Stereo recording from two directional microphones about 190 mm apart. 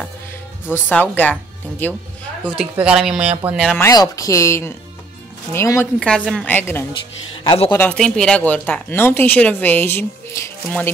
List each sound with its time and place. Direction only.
0.7 s speech: 10° left (ahead or behind)
2.5 s speech: 5° right (ahead or behind)
3.8 s speech: 20° left (ahead or behind)
7.4 s speech: 30° left (ahead or behind)
7.7 s speech: 10° left (ahead or behind)